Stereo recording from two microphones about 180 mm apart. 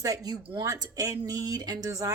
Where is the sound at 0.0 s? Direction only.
20° right (ahead or behind).